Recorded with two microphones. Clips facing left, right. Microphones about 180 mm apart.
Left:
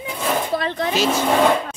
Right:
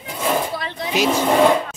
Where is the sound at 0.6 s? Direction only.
55° left (ahead or behind).